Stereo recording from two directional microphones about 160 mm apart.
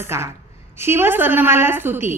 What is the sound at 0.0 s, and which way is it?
A woman's voice, 15° right (ahead or behind).